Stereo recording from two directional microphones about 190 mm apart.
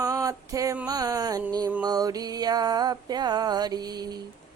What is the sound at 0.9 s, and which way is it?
Mantra, 20° right (ahead or behind).